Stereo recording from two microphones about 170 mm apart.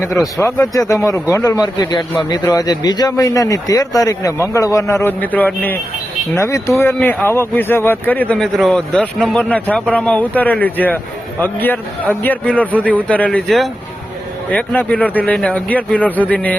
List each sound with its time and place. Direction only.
0.1 s speech: centre (ahead or behind)
0.9 s a man's voice: 20° left (ahead or behind)